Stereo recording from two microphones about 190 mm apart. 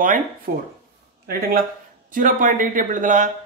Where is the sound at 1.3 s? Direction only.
50° right (ahead or behind).